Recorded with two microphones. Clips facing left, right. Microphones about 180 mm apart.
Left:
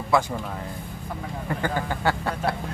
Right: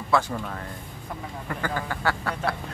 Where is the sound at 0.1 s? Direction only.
15° left (ahead or behind).